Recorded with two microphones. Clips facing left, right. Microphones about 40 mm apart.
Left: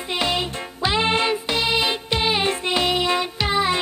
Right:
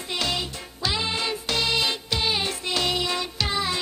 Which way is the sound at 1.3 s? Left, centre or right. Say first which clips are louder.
Left 4 dB; centre.